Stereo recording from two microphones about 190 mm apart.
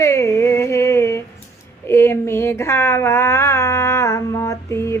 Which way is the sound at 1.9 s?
15° left (ahead or behind).